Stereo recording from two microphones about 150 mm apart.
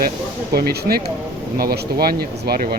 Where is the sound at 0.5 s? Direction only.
90° right.